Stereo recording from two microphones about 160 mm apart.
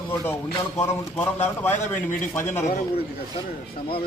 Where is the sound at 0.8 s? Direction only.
15° left (ahead or behind).